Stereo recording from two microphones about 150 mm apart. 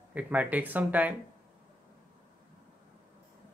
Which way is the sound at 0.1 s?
10° right (ahead or behind).